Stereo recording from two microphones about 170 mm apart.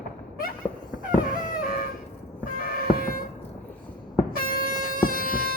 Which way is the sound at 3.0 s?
60° left (ahead or behind).